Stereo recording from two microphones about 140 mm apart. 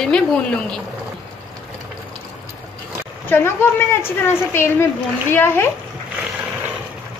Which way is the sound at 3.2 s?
15° left (ahead or behind).